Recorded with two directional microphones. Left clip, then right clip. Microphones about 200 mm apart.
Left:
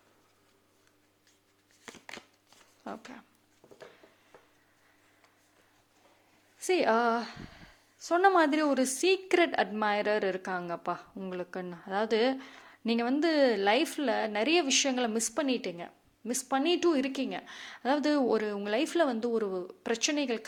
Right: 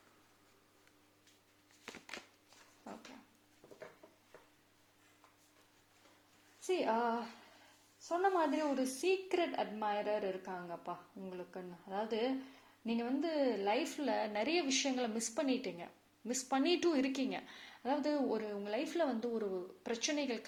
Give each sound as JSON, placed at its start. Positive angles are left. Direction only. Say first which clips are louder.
{"t": 3.6, "sound": "a sound", "louder": "left 3 dB", "side_deg": 15}
{"t": 6.6, "sound": "a woman's voice", "louder": "left 8 dB", "side_deg": 40}
{"t": 8.0, "sound": "a woman's voice", "louder": "left 9 dB", "side_deg": 40}